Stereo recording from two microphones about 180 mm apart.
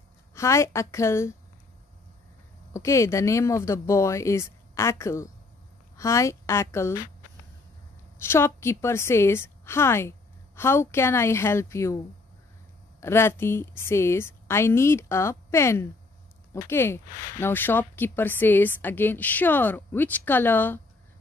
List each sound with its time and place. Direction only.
0.3 s speech: 15° left (ahead or behind)
2.7 s speech: 15° left (ahead or behind)
8.2 s speech: 15° left (ahead or behind)
13.0 s speech: 15° left (ahead or behind)